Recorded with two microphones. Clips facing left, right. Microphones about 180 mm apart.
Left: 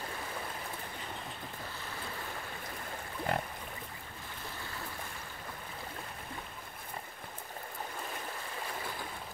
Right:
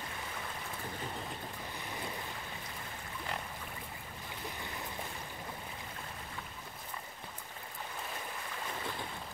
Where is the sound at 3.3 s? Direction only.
55° left (ahead or behind).